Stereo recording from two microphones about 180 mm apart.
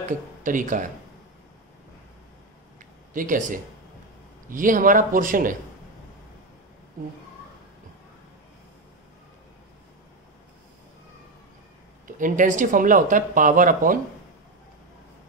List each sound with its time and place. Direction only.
0.4 s speech: 45° right (ahead or behind)
2.8 s a sound: 45° right (ahead or behind)
4.5 s speech: 50° right (ahead or behind)
12.2 s speech: 45° right (ahead or behind)